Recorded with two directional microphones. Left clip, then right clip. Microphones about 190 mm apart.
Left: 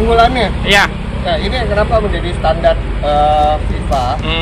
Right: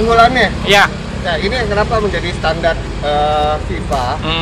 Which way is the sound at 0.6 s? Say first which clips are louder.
Even; 65° right (ahead or behind).